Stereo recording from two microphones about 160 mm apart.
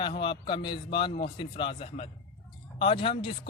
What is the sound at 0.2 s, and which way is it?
Speech, 30° left (ahead or behind).